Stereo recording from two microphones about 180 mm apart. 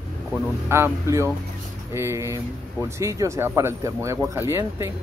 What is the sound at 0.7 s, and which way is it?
Speech, 15° right (ahead or behind).